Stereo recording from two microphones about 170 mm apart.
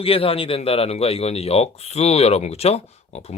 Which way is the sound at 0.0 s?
35° left (ahead or behind).